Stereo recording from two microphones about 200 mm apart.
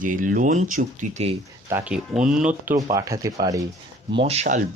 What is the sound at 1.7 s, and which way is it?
Speech, 5° right (ahead or behind).